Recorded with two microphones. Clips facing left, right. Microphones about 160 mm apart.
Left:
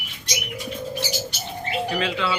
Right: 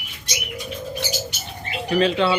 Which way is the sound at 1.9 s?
35° right (ahead or behind).